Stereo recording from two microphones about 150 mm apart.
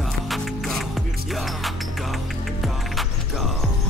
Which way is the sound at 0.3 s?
Centre (ahead or behind).